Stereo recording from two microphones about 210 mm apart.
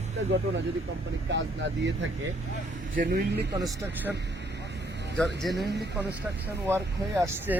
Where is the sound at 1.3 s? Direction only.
60° right (ahead or behind).